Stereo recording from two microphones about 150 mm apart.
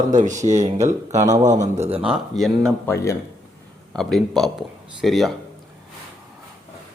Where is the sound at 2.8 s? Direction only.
20° left (ahead or behind).